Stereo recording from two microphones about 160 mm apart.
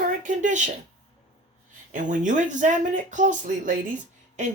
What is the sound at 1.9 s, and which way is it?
Speech, 50° right (ahead or behind).